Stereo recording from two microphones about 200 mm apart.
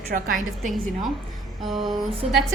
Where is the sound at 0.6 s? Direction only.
Centre (ahead or behind).